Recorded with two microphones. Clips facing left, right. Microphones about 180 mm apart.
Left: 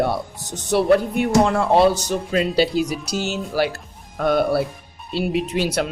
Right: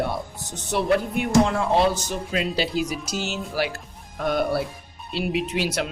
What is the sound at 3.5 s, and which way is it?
Speech, 35° left (ahead or behind).